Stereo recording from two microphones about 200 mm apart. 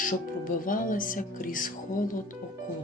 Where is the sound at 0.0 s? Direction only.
40° left (ahead or behind).